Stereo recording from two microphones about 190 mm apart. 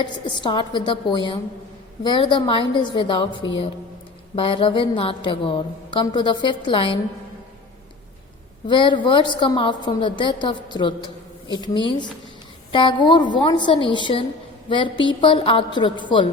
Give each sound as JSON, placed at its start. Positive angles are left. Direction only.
{"t": 0.0, "sound": "a woman's voice", "side_deg": 25}
{"t": 8.6, "sound": "a woman's voice", "side_deg": 25}